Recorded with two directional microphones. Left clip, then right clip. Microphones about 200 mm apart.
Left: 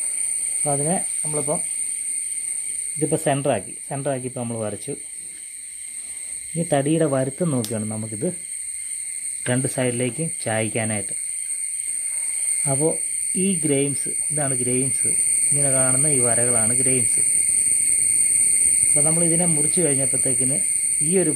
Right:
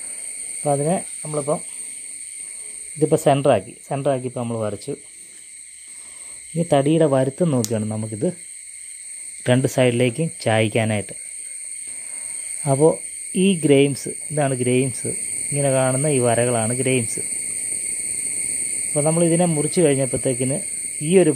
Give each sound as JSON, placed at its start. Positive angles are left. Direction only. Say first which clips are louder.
{"t": 0.7, "sound": "speech", "louder": "right 5 dB", "side_deg": -35}
{"t": 3.0, "sound": "speech", "louder": "right 5 dB", "side_deg": -30}
{"t": 6.5, "sound": "speech", "louder": "right 3 dB", "side_deg": -25}
{"t": 9.4, "sound": "speech", "louder": "right 6 dB", "side_deg": -30}
{"t": 12.6, "sound": "speech", "louder": "right 7 dB", "side_deg": -30}
{"t": 18.9, "sound": "speech", "louder": "right 9 dB", "side_deg": -30}